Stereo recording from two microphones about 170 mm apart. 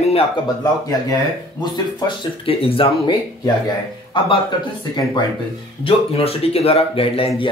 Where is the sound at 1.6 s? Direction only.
25° left (ahead or behind).